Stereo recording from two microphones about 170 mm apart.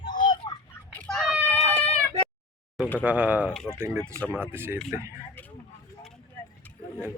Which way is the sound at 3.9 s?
5° left (ahead or behind).